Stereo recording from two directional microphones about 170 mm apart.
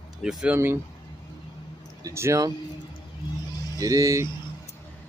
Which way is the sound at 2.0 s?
15° right (ahead or behind).